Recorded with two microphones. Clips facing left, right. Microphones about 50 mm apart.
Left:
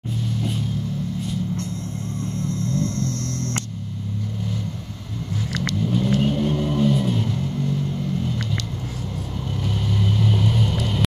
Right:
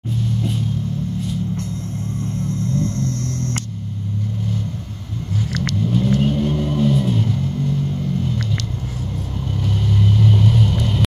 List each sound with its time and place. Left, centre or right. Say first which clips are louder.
2.4 s vehicle: right 2 dB; right
5.8 s vehicle: right 3 dB; centre
6.2 s music: right 2 dB; centre
9.6 s vehicle: right 4 dB; centre